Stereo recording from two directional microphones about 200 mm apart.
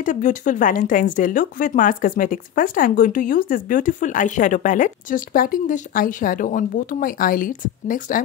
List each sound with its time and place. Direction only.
0.0 s speech: 40° left (ahead or behind)